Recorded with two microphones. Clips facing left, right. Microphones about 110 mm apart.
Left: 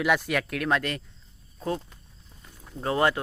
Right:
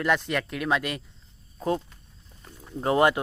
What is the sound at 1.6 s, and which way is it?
Speech, 20° right (ahead or behind).